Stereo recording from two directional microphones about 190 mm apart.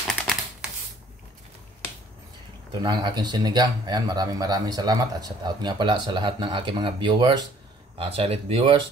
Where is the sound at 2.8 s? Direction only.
20° right (ahead or behind).